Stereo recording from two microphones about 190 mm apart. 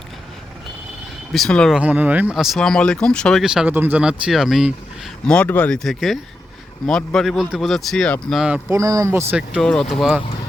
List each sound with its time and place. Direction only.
1.3 s speech: 5° left (ahead or behind)
8.7 s speech: 15° right (ahead or behind)
9.6 s speech: 5° left (ahead or behind)